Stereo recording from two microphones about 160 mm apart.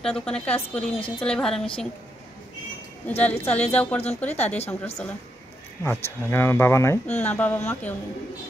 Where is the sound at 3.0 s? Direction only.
10° left (ahead or behind).